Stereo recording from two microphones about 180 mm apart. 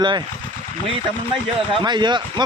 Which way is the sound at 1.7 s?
25° right (ahead or behind).